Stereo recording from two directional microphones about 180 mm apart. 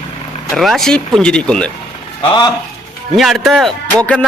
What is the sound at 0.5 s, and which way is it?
Speech, centre (ahead or behind).